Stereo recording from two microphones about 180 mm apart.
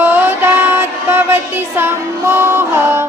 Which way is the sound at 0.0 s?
10° right (ahead or behind).